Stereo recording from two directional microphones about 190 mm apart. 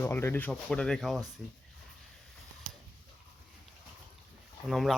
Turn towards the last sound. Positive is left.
turn(degrees=0)  # may be behind; listen again after turning